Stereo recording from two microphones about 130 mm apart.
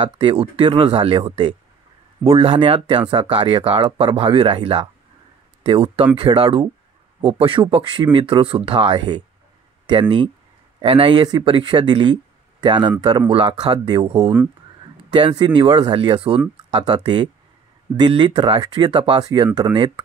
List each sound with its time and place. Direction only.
0.0 s speech: 45° right (ahead or behind)